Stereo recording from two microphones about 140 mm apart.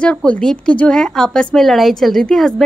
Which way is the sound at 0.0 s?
10° left (ahead or behind).